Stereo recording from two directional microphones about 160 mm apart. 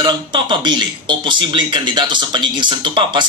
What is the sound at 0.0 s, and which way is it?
A man's voice, 30° right (ahead or behind).